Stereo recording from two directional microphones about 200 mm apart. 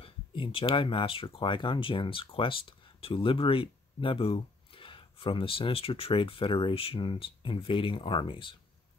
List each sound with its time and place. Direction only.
0.0 s speech: 25° left (ahead or behind)